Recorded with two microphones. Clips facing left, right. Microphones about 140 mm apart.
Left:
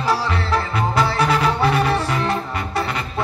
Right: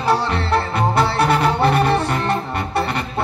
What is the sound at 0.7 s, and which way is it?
Music, 30° right (ahead or behind).